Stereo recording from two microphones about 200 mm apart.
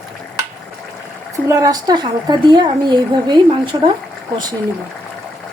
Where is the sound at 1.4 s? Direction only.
15° right (ahead or behind).